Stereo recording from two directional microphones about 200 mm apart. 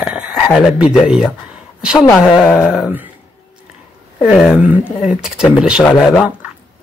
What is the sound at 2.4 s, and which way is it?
Speech, 5° right (ahead or behind).